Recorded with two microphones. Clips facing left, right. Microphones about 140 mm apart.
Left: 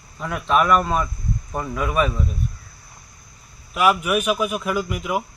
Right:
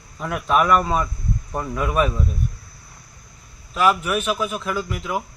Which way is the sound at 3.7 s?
10° left (ahead or behind).